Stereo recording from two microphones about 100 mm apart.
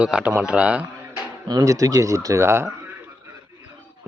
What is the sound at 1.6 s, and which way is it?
Speech, 35° right (ahead or behind).